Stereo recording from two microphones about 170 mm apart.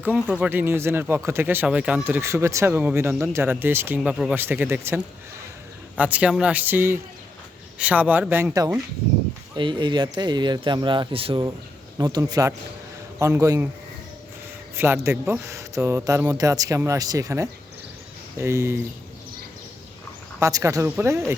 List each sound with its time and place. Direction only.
0.0 s speech: 5° right (ahead or behind)
14.8 s speech: 15° right (ahead or behind)
20.4 s speech: 20° right (ahead or behind)